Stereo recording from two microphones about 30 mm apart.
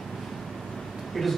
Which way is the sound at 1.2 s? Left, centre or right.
Centre.